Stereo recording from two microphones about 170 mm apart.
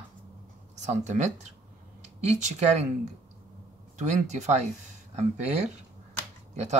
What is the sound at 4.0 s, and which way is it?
Speech, 45° right (ahead or behind).